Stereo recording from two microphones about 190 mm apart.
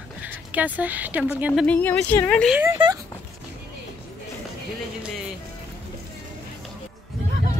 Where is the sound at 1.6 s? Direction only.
10° left (ahead or behind).